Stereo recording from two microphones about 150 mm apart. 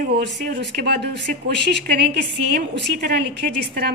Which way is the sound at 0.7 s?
90° right.